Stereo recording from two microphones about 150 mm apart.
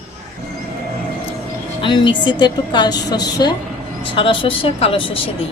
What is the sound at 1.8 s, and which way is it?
A woman's voice, 30° left (ahead or behind).